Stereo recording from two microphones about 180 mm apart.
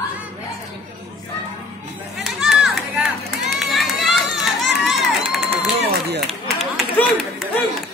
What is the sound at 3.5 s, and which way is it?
Run, centre (ahead or behind).